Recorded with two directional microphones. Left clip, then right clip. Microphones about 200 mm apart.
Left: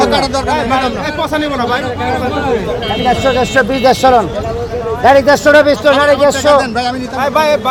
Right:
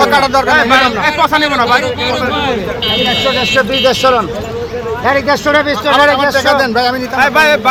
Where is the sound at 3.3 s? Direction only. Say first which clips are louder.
Even; 40° left (ahead or behind).